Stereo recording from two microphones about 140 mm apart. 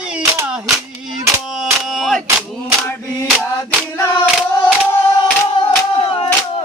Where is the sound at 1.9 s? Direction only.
Centre (ahead or behind).